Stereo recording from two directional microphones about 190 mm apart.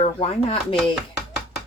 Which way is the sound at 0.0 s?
30° left (ahead or behind).